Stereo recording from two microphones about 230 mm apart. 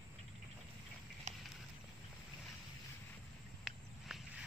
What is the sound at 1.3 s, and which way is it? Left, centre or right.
Run, right.